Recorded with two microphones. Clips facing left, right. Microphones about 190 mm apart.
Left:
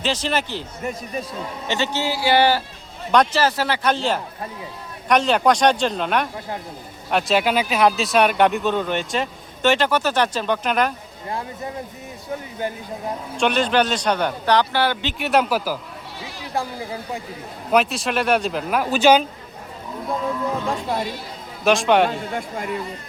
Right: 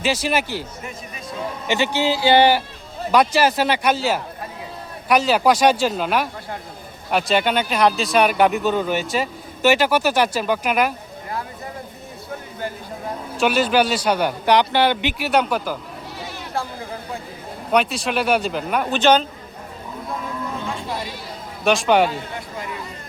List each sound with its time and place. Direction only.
0.0 s a man's voice: 10° right (ahead or behind)
1.6 s a man's voice: 10° right (ahead or behind)
3.9 s a man's voice: 5° right (ahead or behind)
13.3 s a man's voice: 5° right (ahead or behind)
15.2 s speech: centre (ahead or behind)
17.7 s speech: centre (ahead or behind)
20.7 s speech: 50° left (ahead or behind)
21.6 s speech: centre (ahead or behind)
22.4 s speech: 50° left (ahead or behind)